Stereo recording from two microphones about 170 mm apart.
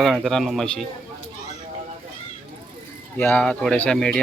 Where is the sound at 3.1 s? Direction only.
10° left (ahead or behind).